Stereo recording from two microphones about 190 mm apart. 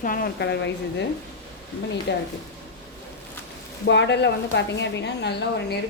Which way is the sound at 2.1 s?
65° left (ahead or behind).